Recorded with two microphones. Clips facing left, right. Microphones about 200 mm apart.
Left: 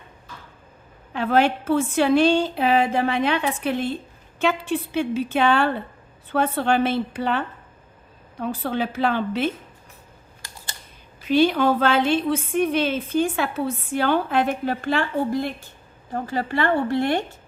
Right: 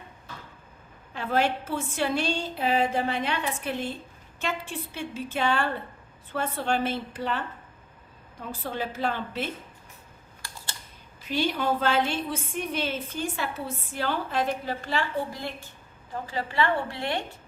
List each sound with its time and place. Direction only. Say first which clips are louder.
1.1 s a woman's voice: left 6 dB; 70° left (ahead or behind)
11.3 s a woman's voice: left 9 dB; 70° left (ahead or behind); by 17.2 s 50° left (ahead or behind)